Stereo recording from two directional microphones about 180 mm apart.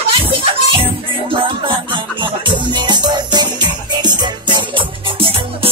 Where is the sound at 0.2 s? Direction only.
30° right (ahead or behind).